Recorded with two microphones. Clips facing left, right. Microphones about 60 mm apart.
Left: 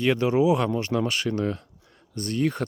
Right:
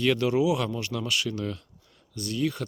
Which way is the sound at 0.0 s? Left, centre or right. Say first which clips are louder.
Left 2 dB; left.